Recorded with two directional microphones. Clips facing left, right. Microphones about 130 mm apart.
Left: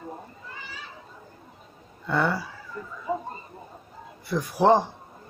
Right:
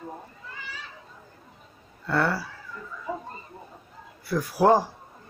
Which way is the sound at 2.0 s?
15° left (ahead or behind).